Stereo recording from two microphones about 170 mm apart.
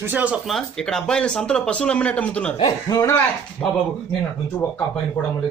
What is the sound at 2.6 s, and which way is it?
A man's voice, 20° left (ahead or behind).